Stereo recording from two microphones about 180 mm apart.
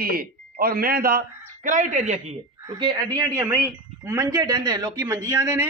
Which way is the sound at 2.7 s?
25° right (ahead or behind).